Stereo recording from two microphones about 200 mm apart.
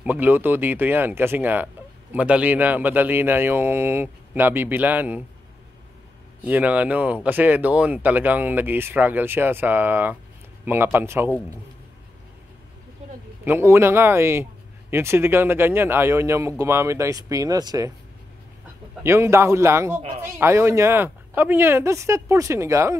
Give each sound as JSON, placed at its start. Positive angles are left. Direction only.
{"t": 0.0, "sound": "speech", "side_deg": -10}
{"t": 6.4, "sound": "speech", "side_deg": -5}
{"t": 13.5, "sound": "speech", "side_deg": -10}
{"t": 19.0, "sound": "speech", "side_deg": -15}